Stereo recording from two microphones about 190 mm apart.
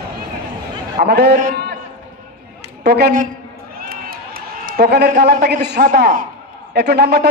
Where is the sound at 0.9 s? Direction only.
60° right (ahead or behind).